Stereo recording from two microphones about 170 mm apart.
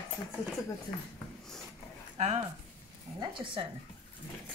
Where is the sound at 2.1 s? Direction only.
40° right (ahead or behind).